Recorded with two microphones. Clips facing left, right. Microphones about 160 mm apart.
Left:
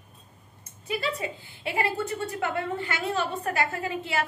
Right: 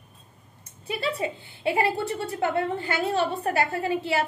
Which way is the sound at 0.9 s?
30° right (ahead or behind).